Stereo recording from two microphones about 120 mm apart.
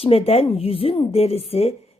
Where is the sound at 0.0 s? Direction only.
55° left (ahead or behind).